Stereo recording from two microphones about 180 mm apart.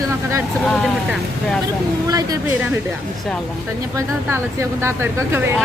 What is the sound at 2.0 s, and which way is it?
Speech, 20° right (ahead or behind).